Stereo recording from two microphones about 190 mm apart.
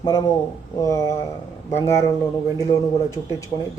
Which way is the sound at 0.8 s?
15° left (ahead or behind).